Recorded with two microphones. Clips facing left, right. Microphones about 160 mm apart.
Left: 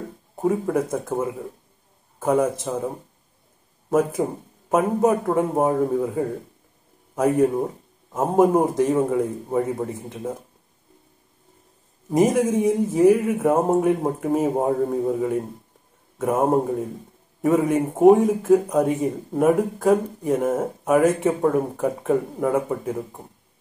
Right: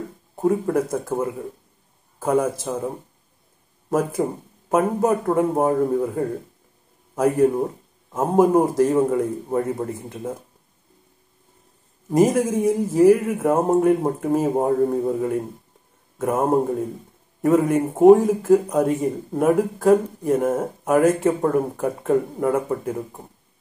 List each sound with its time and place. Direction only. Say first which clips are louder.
0.4 s a man's voice: right 1 dB; centre (ahead or behind)
3.9 s a man's voice: left 1 dB; centre (ahead or behind)
12.1 s a man's voice: right 1 dB; centre (ahead or behind)